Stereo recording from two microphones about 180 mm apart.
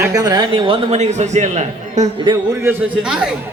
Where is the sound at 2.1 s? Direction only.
25° right (ahead or behind).